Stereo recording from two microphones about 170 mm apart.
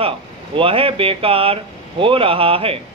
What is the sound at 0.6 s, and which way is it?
Speech, 35° right (ahead or behind).